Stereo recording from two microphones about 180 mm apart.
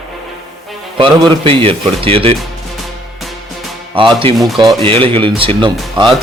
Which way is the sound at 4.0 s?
30° right (ahead or behind).